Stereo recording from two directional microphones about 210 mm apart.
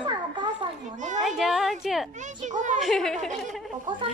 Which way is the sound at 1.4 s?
Centre (ahead or behind).